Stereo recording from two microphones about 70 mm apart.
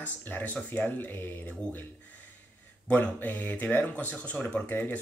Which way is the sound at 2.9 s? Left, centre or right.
Left.